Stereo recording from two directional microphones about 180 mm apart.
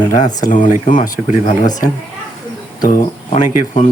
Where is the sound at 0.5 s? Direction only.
45° left (ahead or behind).